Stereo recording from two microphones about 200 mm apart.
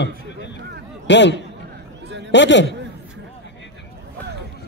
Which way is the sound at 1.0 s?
60° left (ahead or behind).